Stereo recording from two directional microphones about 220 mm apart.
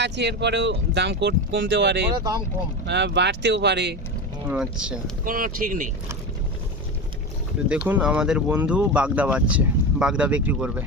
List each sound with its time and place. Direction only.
0.0 s speech: 50° right (ahead or behind)
2.1 s speech: 15° right (ahead or behind)
2.8 s speech: 50° right (ahead or behind)
4.4 s speech: 5° right (ahead or behind)
5.2 s speech: 40° right (ahead or behind)
7.9 s speech: 5° right (ahead or behind)